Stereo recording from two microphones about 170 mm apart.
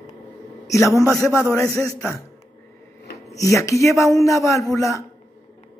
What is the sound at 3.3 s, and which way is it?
A man's voice, 20° left (ahead or behind).